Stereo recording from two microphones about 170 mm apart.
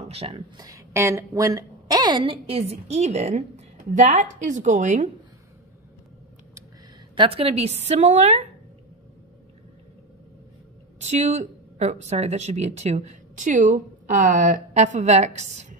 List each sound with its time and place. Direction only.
0.1 s speech: 35° right (ahead or behind)
0.6 s a woman's voice: 20° right (ahead or behind); by 5.1 s 45° right (ahead or behind)
7.2 s a woman's voice: 35° right (ahead or behind)
11.1 s speech: 45° right (ahead or behind)